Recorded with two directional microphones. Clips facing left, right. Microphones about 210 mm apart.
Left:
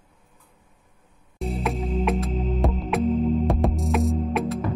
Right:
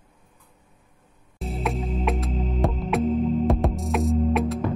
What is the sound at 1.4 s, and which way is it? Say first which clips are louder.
Music: left 1 dB; centre (ahead or behind).